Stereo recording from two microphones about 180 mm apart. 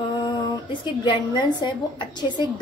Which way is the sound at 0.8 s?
25° left (ahead or behind).